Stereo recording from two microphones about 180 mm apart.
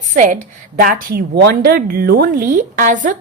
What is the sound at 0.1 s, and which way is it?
A woman's voice, 45° right (ahead or behind).